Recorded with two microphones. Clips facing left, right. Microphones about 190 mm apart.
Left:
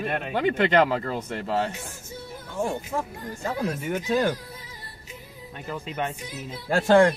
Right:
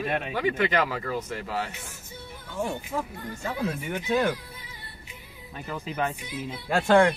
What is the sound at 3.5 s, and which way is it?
Speech, 40° left (ahead or behind).